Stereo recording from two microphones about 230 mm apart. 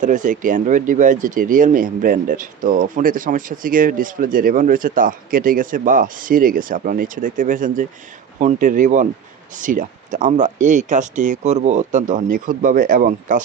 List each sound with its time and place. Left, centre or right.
0.0 s speech: right